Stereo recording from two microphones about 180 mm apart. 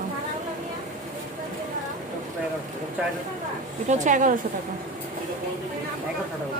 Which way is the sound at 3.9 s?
45° right (ahead or behind).